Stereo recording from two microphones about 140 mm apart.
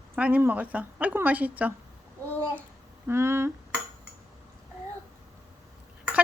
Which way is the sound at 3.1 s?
20° right (ahead or behind).